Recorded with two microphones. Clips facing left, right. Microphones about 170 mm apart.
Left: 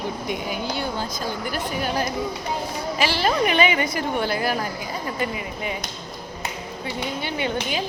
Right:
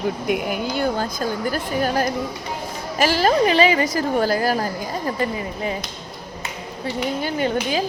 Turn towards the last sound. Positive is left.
turn(degrees=-40)  # may be behind; listen again after turning